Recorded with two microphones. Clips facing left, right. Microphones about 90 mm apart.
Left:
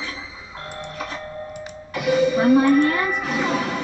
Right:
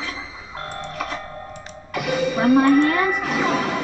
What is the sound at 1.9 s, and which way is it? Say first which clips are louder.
Music: left 3 dB; 45° right (ahead or behind).